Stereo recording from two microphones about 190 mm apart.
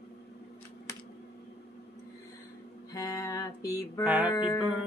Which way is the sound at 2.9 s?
20° left (ahead or behind).